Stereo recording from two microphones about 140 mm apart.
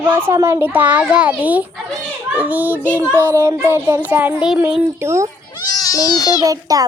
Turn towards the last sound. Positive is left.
turn(degrees=-25)  # may be behind; listen again after turning